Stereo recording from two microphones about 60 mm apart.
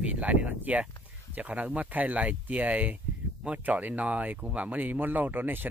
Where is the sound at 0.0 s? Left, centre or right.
Right.